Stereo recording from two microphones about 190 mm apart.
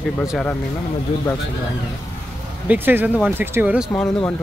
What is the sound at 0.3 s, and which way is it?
Speech, 5° left (ahead or behind).